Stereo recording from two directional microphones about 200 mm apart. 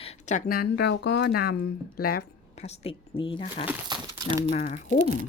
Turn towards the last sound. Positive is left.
turn(degrees=35)  # may be behind; listen again after turning